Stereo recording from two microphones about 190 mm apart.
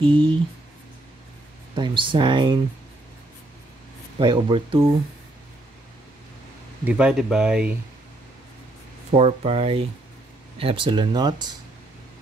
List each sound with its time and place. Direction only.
0.0 s speech: 25° right (ahead or behind)
1.8 s speech: 25° right (ahead or behind)
4.2 s speech: 25° right (ahead or behind)
6.8 s speech: 5° right (ahead or behind)
9.1 s speech: 30° right (ahead or behind)